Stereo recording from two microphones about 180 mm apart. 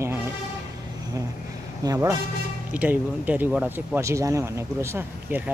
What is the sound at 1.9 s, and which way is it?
Speech, 20° right (ahead or behind).